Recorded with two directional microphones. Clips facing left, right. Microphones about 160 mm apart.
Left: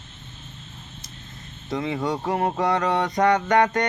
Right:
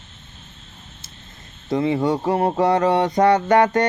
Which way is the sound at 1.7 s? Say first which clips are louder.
Right 6 dB; 30° right (ahead or behind).